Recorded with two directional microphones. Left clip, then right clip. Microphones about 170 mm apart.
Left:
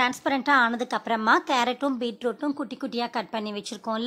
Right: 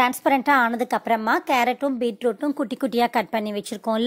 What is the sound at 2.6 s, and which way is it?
A woman's voice, 25° right (ahead or behind).